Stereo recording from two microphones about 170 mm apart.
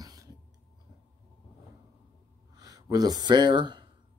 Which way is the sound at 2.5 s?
20° right (ahead or behind).